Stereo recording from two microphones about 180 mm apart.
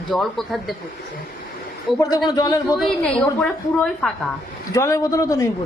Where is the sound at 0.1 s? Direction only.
Centre (ahead or behind).